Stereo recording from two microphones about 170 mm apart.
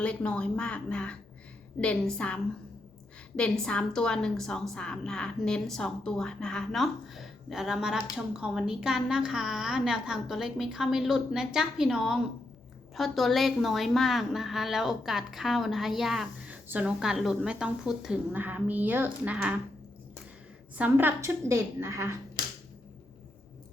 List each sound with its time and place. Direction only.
0.0 s a woman's voice: 5° left (ahead or behind); by 19.5 s 10° right (ahead or behind)
20.7 s a woman's voice: 10° right (ahead or behind)